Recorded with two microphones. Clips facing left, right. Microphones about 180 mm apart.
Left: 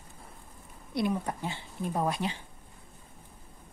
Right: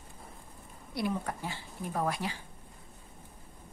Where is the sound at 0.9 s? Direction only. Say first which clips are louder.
Left 3 dB; 20° left (ahead or behind).